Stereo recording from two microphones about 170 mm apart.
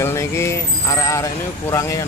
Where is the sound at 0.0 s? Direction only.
15° left (ahead or behind).